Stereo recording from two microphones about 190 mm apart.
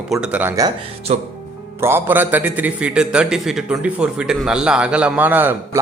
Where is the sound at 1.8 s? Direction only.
10° right (ahead or behind).